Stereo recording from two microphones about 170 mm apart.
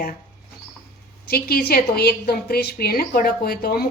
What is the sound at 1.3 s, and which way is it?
A woman's voice, 65° left (ahead or behind).